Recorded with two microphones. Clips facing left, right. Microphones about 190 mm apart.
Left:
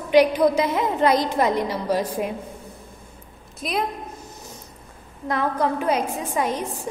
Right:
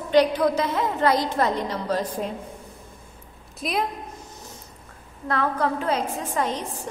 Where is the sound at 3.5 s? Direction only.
Centre (ahead or behind).